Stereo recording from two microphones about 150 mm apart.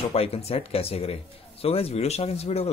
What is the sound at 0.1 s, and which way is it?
A man's voice, 40° left (ahead or behind).